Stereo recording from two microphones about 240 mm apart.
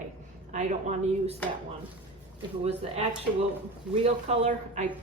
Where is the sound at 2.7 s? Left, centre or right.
Right.